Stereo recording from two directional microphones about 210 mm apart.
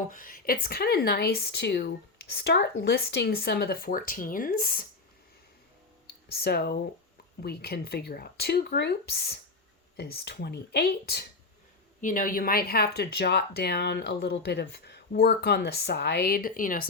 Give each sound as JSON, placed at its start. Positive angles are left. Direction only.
{"t": 0.1, "sound": "speech", "side_deg": 40}
{"t": 6.1, "sound": "speech", "side_deg": 50}